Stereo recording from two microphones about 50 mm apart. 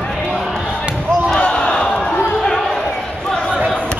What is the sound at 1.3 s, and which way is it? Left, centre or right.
Crowd, left.